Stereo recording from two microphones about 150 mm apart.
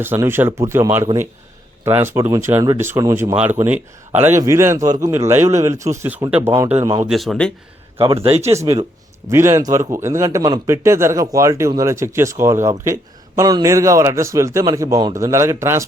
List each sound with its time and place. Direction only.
0.0 s speech: 15° right (ahead or behind)
7.1 s a man's voice: centre (ahead or behind)
7.9 s a man's voice: 40° right (ahead or behind)
8.4 s speech: 20° right (ahead or behind)